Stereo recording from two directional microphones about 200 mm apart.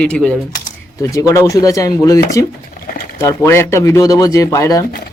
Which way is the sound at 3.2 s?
15° left (ahead or behind).